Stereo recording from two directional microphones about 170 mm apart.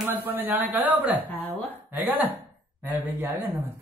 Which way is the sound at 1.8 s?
10° right (ahead or behind).